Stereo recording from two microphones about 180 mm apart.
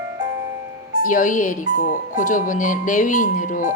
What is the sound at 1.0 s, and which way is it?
Speech, 45° left (ahead or behind).